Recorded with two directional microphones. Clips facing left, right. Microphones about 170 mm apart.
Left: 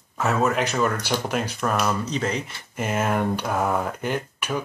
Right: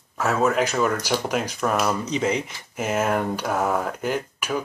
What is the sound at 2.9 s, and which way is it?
Speech, 5° right (ahead or behind).